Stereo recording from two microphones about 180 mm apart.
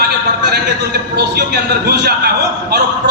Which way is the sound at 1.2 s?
65° right (ahead or behind).